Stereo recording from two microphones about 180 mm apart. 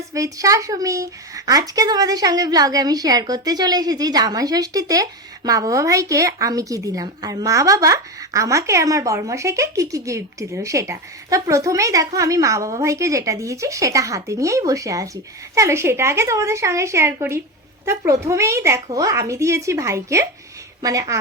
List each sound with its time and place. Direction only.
0.1 s a woman's voice: 20° right (ahead or behind)